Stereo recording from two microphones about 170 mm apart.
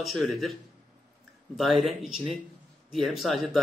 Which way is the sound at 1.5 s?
Centre (ahead or behind).